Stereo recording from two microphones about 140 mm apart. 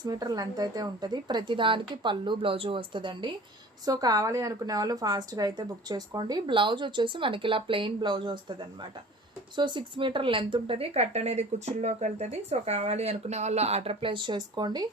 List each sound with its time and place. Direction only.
0.0 s a woman's voice: 25° right (ahead or behind)